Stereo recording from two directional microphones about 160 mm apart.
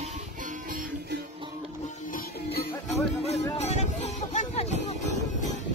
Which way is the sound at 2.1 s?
80° left.